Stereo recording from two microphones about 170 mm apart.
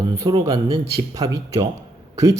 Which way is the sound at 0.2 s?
30° right (ahead or behind).